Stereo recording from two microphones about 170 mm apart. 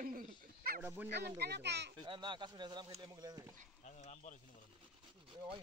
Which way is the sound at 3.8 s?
45° left (ahead or behind).